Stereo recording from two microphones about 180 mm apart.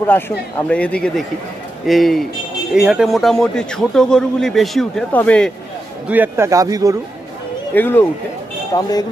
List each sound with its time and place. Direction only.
0.7 s a man's voice: 5° left (ahead or behind)
6.0 s speech: 10° right (ahead or behind)
7.7 s speech: 10° left (ahead or behind)